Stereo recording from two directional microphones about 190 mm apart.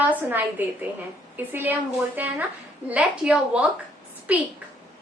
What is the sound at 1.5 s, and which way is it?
A woman's voice, 10° right (ahead or behind).